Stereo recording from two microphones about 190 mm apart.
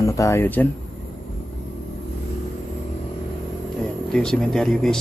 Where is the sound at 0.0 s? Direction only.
15° left (ahead or behind).